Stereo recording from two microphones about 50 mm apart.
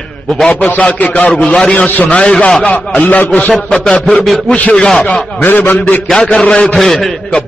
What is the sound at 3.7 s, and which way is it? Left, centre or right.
Speech, centre.